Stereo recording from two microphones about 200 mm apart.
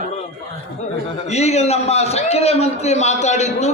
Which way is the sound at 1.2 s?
35° left (ahead or behind).